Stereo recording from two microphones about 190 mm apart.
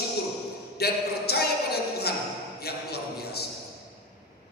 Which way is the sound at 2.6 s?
55° left (ahead or behind).